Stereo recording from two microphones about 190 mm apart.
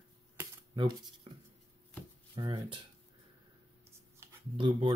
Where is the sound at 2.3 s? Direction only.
25° right (ahead or behind).